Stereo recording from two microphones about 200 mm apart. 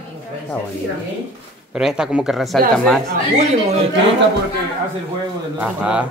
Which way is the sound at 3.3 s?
30° right (ahead or behind).